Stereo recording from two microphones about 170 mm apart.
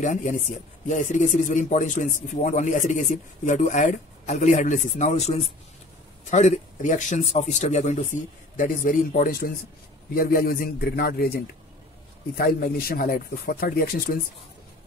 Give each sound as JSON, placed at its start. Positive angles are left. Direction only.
{"t": 0.0, "sound": "speech", "side_deg": 50}